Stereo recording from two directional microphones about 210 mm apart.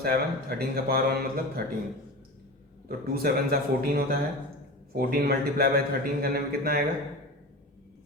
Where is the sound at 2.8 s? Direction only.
45° right (ahead or behind).